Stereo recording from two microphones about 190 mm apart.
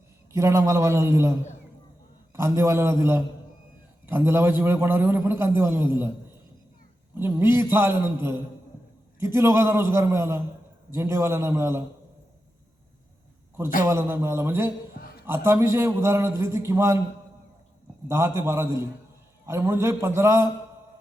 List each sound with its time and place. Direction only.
0.3 s a man's voice: 15° right (ahead or behind)
7.2 s a man's voice: 10° right (ahead or behind)
13.8 s a man's voice: 15° right (ahead or behind)
15.0 s a sound: 50° left (ahead or behind)
15.3 s a man's voice: 15° right (ahead or behind)
18.1 s a man's voice: 15° right (ahead or behind)